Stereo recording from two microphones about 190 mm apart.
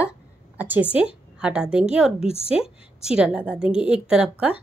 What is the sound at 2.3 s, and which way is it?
Speech, 30° left (ahead or behind).